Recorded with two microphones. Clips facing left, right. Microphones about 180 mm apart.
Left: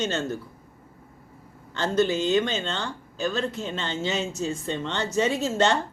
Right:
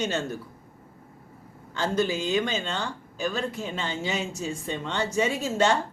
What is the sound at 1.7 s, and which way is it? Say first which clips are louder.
Speech: left 3 dB; 10° right (ahead or behind).